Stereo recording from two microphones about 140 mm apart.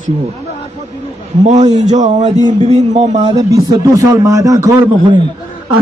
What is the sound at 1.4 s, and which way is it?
A man's voice, 55° right (ahead or behind).